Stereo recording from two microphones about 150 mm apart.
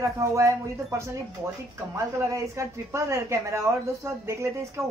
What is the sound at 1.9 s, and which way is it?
A woman's voice, 20° right (ahead or behind).